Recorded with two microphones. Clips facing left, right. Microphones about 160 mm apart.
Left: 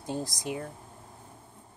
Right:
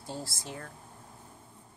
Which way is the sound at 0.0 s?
15° left (ahead or behind).